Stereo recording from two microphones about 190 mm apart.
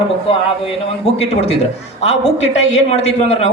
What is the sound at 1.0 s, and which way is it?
A man's voice, 30° left (ahead or behind).